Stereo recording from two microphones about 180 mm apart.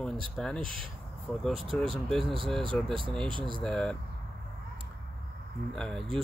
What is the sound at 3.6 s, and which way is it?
Speech, 5° left (ahead or behind).